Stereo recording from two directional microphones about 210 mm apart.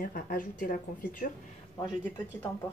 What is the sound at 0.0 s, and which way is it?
Speech, 40° left (ahead or behind).